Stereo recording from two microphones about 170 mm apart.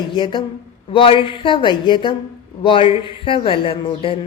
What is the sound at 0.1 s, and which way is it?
A woman's voice, 30° left (ahead or behind).